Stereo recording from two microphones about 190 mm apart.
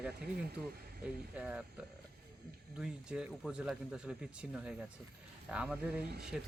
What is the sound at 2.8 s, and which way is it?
Speech, 5° right (ahead or behind).